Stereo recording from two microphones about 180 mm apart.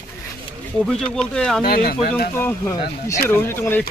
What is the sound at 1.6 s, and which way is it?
Speech, 55° left (ahead or behind).